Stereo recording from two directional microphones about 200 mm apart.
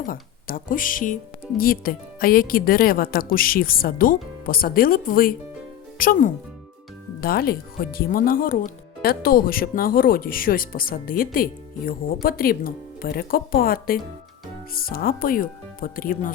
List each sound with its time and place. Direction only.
0.0 s speech: 45° left (ahead or behind)